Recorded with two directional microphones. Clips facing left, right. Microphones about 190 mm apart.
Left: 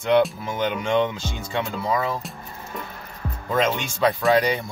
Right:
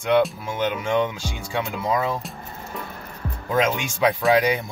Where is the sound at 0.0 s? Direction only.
5° right (ahead or behind).